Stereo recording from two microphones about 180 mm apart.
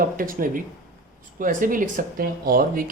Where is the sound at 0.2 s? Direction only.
50° right (ahead or behind).